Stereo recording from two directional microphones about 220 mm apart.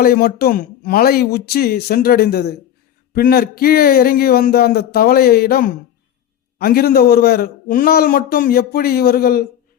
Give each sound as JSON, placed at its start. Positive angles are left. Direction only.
{"t": 0.0, "sound": "a man's voice", "side_deg": 40}